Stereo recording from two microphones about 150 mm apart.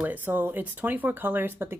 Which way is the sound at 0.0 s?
10° right (ahead or behind).